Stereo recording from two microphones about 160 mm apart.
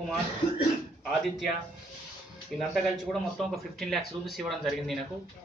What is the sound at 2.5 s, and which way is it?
Speech, centre (ahead or behind).